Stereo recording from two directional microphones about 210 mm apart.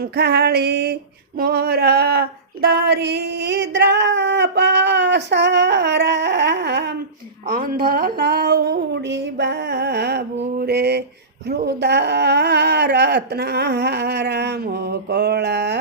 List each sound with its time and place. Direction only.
0.0 s female singing: 50° right (ahead or behind)